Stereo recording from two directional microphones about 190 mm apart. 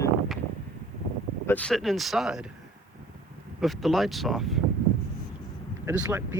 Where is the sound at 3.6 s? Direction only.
Centre (ahead or behind).